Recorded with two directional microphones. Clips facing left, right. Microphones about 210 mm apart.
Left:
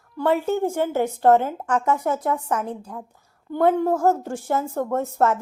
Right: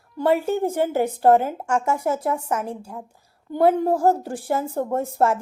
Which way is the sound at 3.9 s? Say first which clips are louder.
Right 1 dB; 30° right (ahead or behind).